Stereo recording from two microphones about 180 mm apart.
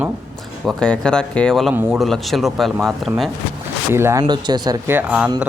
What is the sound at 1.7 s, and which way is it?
Speech, 10° right (ahead or behind).